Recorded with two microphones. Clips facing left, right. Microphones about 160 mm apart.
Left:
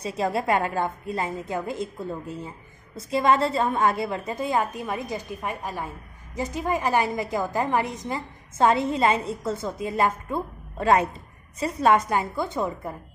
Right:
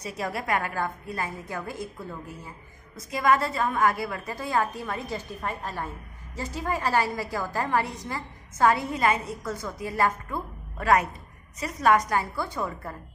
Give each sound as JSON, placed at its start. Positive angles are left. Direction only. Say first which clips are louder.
{"t": 0.0, "sound": "a woman's voice", "louder": "left 6 dB", "side_deg": 25}